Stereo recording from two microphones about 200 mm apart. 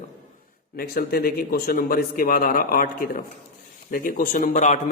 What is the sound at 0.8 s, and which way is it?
A man's voice, 50° left (ahead or behind).